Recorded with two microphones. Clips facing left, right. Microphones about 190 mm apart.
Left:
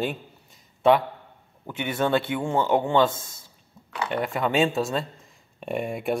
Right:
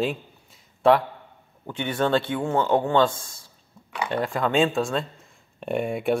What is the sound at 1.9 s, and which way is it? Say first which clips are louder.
A man's voice: right 1 dB; 20° left (ahead or behind).